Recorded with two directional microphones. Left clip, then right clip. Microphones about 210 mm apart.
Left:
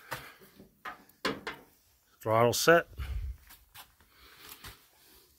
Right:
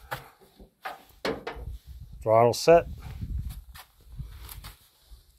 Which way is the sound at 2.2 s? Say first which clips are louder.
Right 5 dB; 10° left (ahead or behind).